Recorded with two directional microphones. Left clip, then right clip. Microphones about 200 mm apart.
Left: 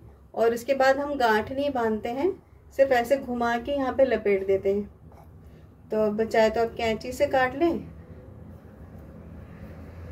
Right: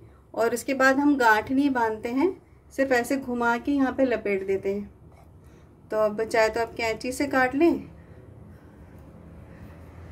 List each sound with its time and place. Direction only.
0.4 s a woman's voice: 65° right (ahead or behind)
5.9 s a woman's voice: 60° right (ahead or behind)